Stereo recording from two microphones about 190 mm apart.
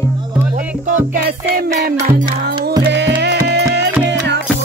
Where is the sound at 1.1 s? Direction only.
50° right (ahead or behind).